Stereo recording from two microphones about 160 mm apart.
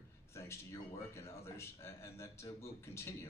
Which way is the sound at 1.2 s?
15° left (ahead or behind).